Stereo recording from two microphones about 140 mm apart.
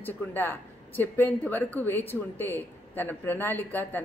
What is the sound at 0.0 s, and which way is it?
A woman's voice, 15° left (ahead or behind).